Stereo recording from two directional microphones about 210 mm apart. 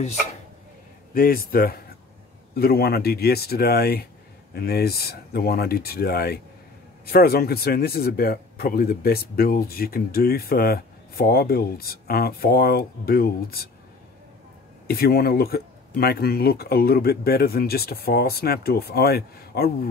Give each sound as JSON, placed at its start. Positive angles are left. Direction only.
{"t": 1.1, "sound": "speech", "side_deg": 45}
{"t": 14.9, "sound": "speech", "side_deg": 45}